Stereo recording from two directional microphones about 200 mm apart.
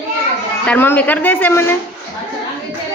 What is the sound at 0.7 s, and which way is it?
A woman's voice, 10° left (ahead or behind).